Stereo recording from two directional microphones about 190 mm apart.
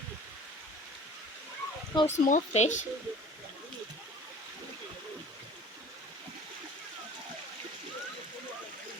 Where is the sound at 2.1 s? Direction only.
40° left (ahead or behind).